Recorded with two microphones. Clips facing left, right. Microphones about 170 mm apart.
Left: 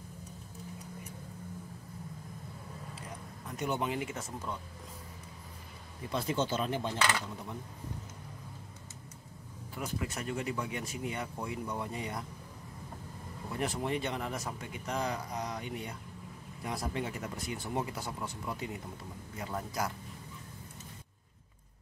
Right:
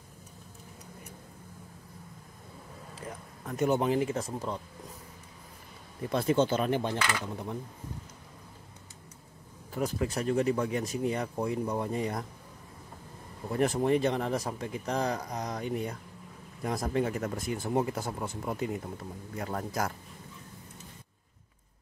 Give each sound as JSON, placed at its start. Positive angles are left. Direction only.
{"t": 3.4, "sound": "speech", "side_deg": -50}
{"t": 6.1, "sound": "speech", "side_deg": -55}
{"t": 9.8, "sound": "speech", "side_deg": -40}
{"t": 13.6, "sound": "speech", "side_deg": -45}